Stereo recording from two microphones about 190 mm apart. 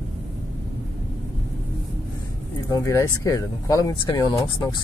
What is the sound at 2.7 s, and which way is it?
Speech, 20° left (ahead or behind).